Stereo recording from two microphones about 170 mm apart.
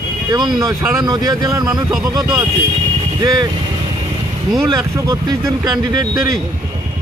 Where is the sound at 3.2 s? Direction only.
20° right (ahead or behind).